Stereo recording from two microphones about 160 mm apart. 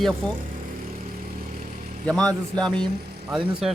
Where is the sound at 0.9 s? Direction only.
60° right (ahead or behind).